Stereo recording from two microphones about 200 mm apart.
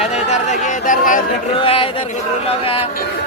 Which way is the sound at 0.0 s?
35° left (ahead or behind).